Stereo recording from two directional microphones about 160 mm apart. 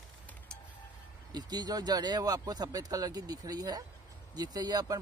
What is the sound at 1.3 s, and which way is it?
Speech, 25° right (ahead or behind).